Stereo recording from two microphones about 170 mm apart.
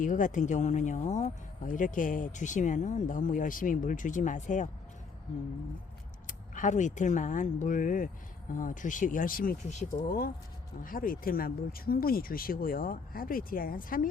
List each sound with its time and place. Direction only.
0.0 s speech: 50° left (ahead or behind)
6.2 s speech: 50° left (ahead or behind)